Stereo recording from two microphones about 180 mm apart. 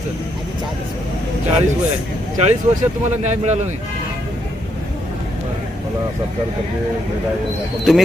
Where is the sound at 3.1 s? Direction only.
40° right (ahead or behind).